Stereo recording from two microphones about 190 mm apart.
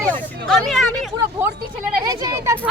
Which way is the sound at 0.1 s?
5° left (ahead or behind).